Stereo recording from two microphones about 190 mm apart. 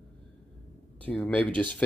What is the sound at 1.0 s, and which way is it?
Speech, 10° left (ahead or behind).